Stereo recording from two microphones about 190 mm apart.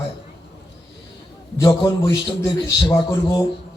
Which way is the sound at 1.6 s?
25° left (ahead or behind).